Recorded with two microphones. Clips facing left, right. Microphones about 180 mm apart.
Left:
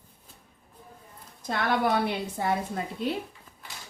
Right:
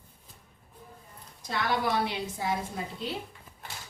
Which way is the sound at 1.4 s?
55° left (ahead or behind).